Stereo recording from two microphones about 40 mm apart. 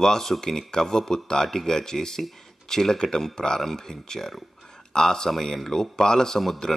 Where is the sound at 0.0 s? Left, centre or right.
Centre.